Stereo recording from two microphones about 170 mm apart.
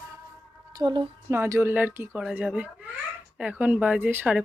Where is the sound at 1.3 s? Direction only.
15° right (ahead or behind).